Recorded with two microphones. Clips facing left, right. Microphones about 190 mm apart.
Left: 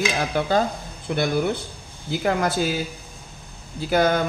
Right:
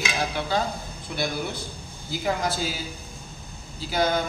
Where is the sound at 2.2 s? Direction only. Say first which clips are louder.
Left 5 dB; 60° left (ahead or behind).